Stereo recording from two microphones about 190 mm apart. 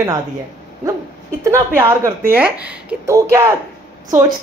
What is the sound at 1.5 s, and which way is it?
A woman's voice, 15° right (ahead or behind).